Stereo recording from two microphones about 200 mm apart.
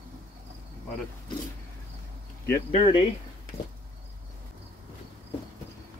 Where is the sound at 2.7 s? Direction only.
25° left (ahead or behind).